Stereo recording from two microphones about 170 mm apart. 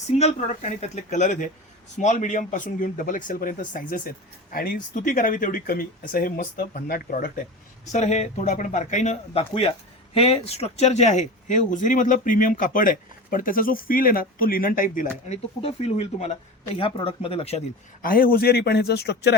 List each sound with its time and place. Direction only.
0.2 s speech: 45° left (ahead or behind)
7.9 s speech: 40° left (ahead or behind)
15.3 s speech: 35° left (ahead or behind)
18.0 s speech: 60° left (ahead or behind)